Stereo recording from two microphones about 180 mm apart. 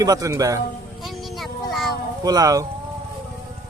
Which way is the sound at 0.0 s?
20° right (ahead or behind).